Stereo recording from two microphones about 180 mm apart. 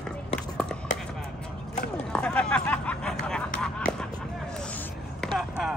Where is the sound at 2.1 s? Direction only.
5° left (ahead or behind).